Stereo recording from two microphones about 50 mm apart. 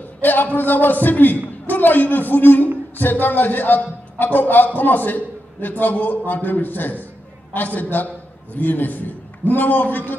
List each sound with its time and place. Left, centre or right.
0.2 s a man's voice: left